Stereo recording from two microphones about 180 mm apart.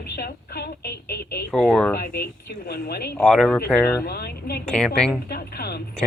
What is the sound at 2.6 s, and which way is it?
Speech, 60° left (ahead or behind).